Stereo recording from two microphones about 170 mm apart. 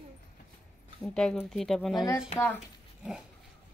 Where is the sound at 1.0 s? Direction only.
5° left (ahead or behind).